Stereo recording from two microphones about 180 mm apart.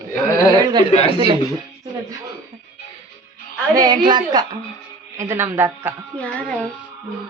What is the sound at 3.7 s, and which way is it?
A man's voice, 20° right (ahead or behind).